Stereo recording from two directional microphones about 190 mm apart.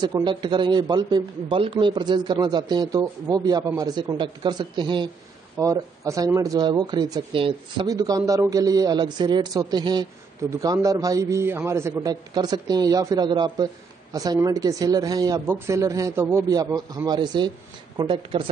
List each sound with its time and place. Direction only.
0.0 s a man's voice: 25° right (ahead or behind)